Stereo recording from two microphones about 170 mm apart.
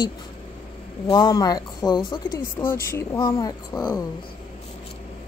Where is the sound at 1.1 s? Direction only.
25° left (ahead or behind).